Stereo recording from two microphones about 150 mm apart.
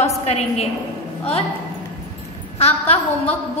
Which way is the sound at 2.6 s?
45° left (ahead or behind).